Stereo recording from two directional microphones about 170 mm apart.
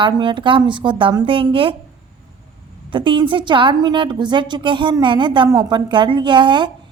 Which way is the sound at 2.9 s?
30° right (ahead or behind).